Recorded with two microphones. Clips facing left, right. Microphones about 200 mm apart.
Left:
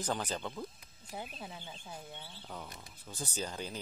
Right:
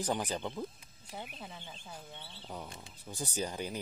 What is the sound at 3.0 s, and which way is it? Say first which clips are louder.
Speech: right 3 dB; 15° right (ahead or behind).